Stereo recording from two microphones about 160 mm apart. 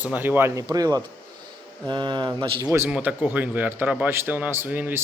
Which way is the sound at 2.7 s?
10° right (ahead or behind).